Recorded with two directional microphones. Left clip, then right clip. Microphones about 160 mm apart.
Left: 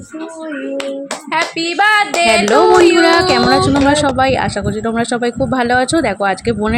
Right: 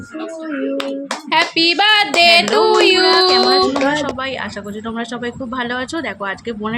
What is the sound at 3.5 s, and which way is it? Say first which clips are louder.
A woman's voice: left 3 dB; 35° left (ahead or behind).